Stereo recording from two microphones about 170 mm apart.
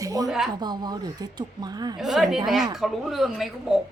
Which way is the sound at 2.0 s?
Centre (ahead or behind).